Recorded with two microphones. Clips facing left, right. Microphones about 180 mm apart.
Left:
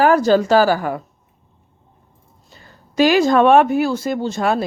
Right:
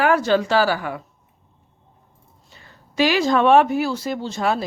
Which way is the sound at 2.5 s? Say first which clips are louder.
Left 3 dB; 40° left (ahead or behind).